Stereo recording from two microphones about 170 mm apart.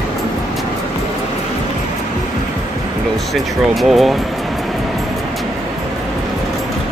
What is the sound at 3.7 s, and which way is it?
Speech, centre (ahead or behind).